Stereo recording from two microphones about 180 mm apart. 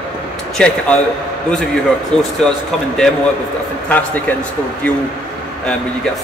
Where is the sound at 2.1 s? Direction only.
5° left (ahead or behind).